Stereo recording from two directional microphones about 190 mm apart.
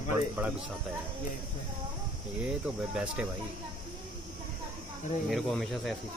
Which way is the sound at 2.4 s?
5° right (ahead or behind).